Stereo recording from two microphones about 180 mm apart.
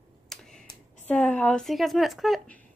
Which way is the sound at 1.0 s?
5° left (ahead or behind).